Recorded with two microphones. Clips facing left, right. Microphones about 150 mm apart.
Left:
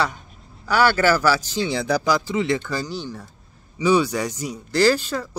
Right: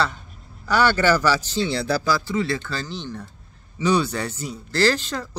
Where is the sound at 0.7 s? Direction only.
10° left (ahead or behind).